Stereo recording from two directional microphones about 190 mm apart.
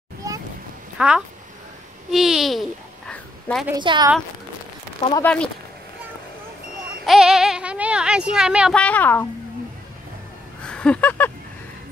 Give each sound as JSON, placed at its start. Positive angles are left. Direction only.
{"t": 0.9, "sound": "speech", "side_deg": -5}
{"t": 3.1, "sound": "a sound", "side_deg": 5}
{"t": 3.7, "sound": "a woman's voice", "side_deg": -20}
{"t": 5.2, "sound": "speech", "side_deg": 5}
{"t": 7.1, "sound": "speech", "side_deg": -5}
{"t": 8.8, "sound": "a woman's voice", "side_deg": 10}
{"t": 10.6, "sound": "a sound", "side_deg": 5}